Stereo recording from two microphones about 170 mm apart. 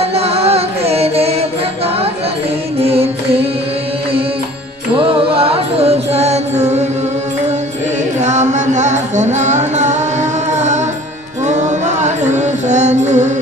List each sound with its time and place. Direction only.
0.0 s music: 35° right (ahead or behind)
2.8 s music: 35° right (ahead or behind)
4.9 s music: 35° right (ahead or behind)
8.2 s music: 45° right (ahead or behind)